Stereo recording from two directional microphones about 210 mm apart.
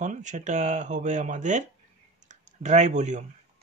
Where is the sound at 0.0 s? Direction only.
35° right (ahead or behind).